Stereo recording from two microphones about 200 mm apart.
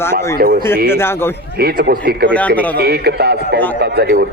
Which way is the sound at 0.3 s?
50° right (ahead or behind).